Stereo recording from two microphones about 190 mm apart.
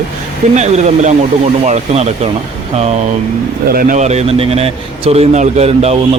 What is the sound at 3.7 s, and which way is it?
A man's voice, 45° right (ahead or behind).